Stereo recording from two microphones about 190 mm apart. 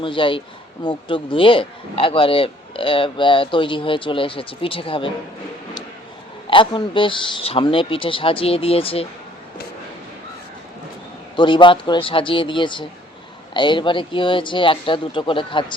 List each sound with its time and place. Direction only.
0.0 s a man's voice: 25° left (ahead or behind)
6.5 s a man's voice: 25° left (ahead or behind)
11.3 s a man's voice: 25° left (ahead or behind)